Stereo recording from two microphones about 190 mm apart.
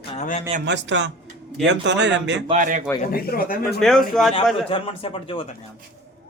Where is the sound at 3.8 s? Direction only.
Centre (ahead or behind).